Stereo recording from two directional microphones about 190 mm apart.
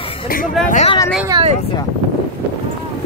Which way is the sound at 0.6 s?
40° left (ahead or behind).